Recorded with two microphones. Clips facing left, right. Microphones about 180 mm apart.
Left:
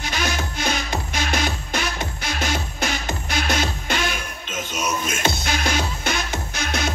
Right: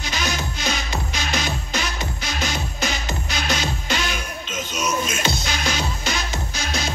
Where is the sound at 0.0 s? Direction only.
55° left (ahead or behind).